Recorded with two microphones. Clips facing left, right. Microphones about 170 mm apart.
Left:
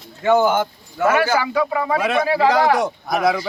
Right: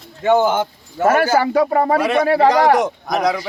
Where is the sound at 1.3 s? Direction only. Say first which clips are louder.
Right 5 dB; 45° right (ahead or behind).